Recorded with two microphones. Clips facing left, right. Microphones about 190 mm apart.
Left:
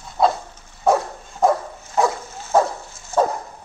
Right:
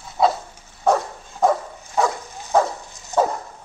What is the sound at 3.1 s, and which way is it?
Dog, 15° right (ahead or behind).